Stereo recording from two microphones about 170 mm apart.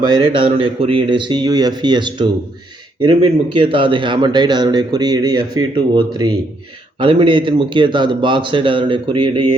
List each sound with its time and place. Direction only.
0.0 s a man's voice: 25° right (ahead or behind)